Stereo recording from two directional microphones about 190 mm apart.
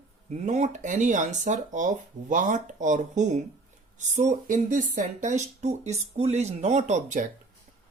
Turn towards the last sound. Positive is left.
turn(degrees=-40)  # may be behind; listen again after turning